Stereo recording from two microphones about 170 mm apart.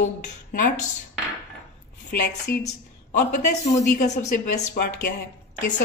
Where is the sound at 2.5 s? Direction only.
70° left (ahead or behind).